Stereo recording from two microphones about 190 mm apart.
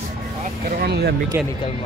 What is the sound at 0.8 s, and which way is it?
Speech, 60° right (ahead or behind).